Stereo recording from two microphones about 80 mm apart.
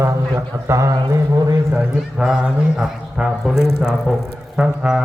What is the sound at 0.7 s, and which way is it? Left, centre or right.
Speech, right.